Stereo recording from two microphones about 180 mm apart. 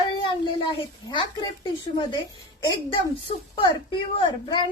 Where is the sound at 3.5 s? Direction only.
30° left (ahead or behind).